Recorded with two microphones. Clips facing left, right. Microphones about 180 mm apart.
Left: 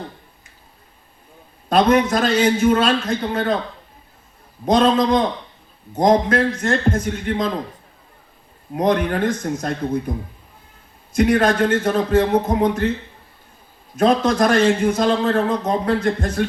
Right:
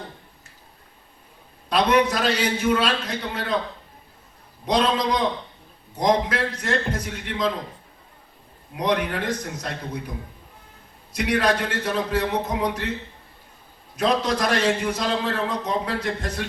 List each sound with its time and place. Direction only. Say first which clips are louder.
1.7 s a man's voice: left 4 dB; 45° left (ahead or behind)
4.6 s a man's voice: left 6 dB; 45° left (ahead or behind)
8.7 s a man's voice: left 5 dB; 45° left (ahead or behind)
11.1 s a man's voice: left 6 dB; 45° left (ahead or behind)
13.9 s a man's voice: left 6 dB; 45° left (ahead or behind)